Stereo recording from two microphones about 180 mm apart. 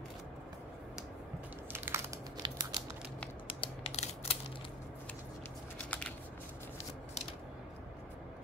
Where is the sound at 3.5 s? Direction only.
35° left (ahead or behind).